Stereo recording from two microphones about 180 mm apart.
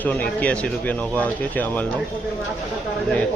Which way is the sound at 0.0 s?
10° left (ahead or behind).